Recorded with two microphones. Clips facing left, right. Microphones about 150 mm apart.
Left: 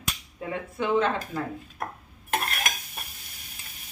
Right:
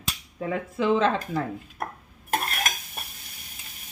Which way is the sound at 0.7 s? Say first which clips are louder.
Right 2 dB; 90° right.